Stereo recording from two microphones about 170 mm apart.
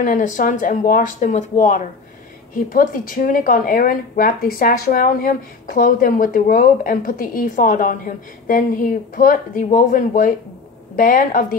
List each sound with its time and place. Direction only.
0.0 s speech: 50° left (ahead or behind)